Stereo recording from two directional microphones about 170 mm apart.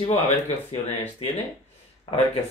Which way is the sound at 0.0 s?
40° left (ahead or behind).